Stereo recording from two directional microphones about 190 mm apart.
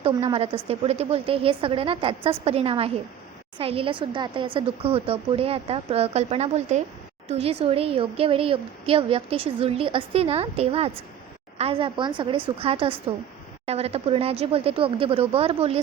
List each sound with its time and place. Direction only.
0.0 s a woman's voice: 30° right (ahead or behind)